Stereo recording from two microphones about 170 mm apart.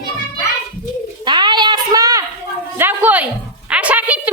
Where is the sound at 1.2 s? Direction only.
25° right (ahead or behind).